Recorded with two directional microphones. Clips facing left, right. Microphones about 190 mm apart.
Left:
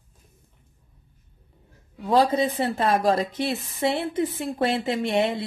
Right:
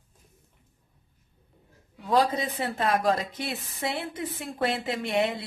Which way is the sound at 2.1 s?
30° left (ahead or behind).